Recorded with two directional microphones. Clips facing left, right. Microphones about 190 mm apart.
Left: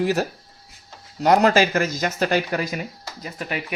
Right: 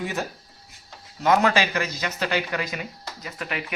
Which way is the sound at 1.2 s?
40° left (ahead or behind).